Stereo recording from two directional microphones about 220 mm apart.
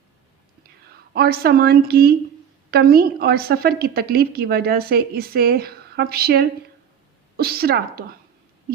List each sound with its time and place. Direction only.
1.1 s a woman's voice: 45° right (ahead or behind)